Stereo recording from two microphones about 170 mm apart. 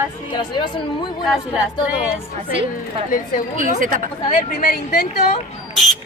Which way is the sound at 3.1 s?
50° left (ahead or behind).